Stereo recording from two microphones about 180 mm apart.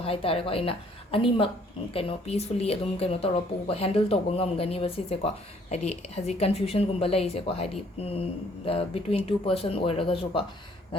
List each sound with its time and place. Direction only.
0.0 s speech: 30° left (ahead or behind)